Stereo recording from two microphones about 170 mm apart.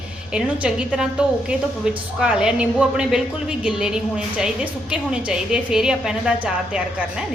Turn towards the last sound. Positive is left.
turn(degrees=-5)  # may be behind; listen again after turning